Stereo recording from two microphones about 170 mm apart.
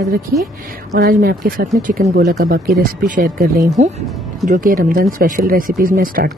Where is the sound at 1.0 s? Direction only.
60° right (ahead or behind).